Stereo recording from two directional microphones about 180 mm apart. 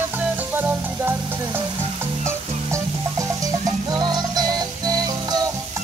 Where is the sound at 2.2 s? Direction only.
15° right (ahead or behind).